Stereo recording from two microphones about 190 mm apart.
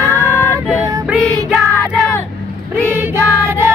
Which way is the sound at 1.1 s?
5° right (ahead or behind).